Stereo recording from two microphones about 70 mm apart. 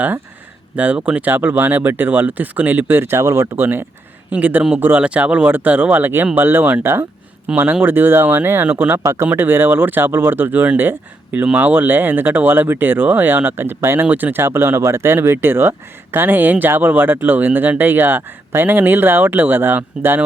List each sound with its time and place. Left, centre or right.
0.8 s speech: centre
1.3 s speech: right
3.6 s speech: right
7.4 s speech: right